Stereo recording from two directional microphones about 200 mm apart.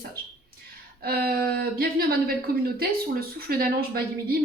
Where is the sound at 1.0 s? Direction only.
50° right (ahead or behind).